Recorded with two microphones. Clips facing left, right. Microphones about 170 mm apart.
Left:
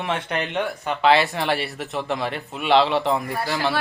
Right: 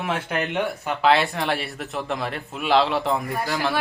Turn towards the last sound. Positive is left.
turn(degrees=0)  # may be behind; listen again after turning